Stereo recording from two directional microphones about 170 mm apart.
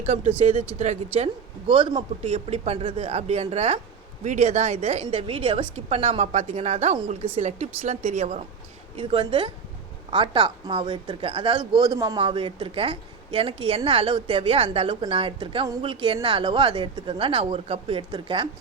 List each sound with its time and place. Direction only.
0.0 s a woman's voice: 40° right (ahead or behind)